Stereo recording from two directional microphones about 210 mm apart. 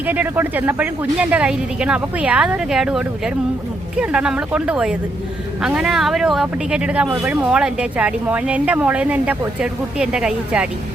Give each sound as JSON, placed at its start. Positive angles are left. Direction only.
{"t": 0.0, "sound": "speech", "side_deg": -10}